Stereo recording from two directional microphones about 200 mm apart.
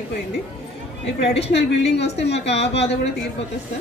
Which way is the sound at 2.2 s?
60° left (ahead or behind).